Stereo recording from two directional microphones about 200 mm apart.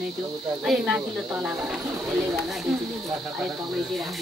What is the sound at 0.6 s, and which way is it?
Speech, 5° right (ahead or behind).